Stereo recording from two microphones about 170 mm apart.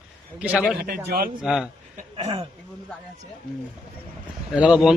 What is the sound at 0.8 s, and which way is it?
Speech, 65° right (ahead or behind).